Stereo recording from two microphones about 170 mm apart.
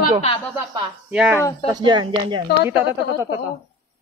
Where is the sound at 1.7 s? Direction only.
25° right (ahead or behind).